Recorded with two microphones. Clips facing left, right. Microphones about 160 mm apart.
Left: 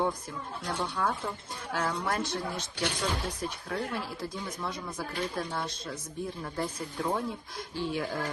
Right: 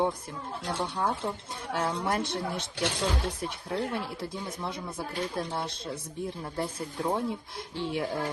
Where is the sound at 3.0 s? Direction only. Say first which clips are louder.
Right 2 dB; 55° right (ahead or behind).